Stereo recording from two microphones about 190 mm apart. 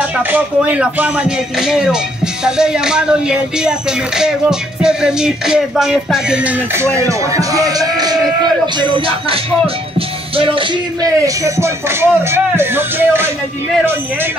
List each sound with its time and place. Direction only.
0.3 s speech: 10° right (ahead or behind)
2.4 s music: 5° right (ahead or behind)
7.0 s speech: 15° right (ahead or behind)
8.9 s music: 30° right (ahead or behind)
11.0 s speech: 15° right (ahead or behind)